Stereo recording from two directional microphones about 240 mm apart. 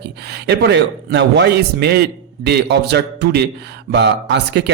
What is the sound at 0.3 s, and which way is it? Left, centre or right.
A man's voice, right.